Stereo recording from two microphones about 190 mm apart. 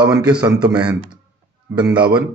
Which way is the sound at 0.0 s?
5° right (ahead or behind).